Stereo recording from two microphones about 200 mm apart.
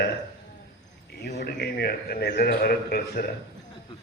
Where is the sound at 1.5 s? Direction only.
55° left (ahead or behind).